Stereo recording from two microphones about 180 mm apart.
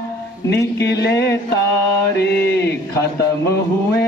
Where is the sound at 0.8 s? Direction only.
70° left (ahead or behind).